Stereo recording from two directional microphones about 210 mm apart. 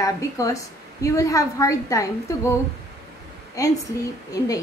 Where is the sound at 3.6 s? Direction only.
15° left (ahead or behind).